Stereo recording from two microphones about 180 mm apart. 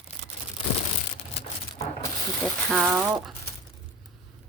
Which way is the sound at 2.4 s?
Centre (ahead or behind).